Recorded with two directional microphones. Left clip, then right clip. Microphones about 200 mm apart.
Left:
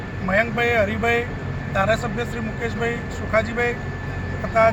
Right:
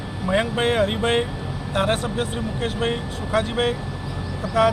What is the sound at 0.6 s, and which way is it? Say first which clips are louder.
Speech: left 1 dB; 20° right (ahead or behind).